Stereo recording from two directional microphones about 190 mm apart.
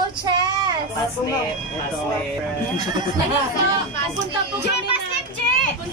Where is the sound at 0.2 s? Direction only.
25° right (ahead or behind).